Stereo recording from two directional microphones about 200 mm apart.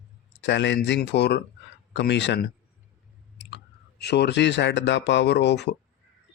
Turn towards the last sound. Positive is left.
turn(degrees=60)  # may be behind; listen again after turning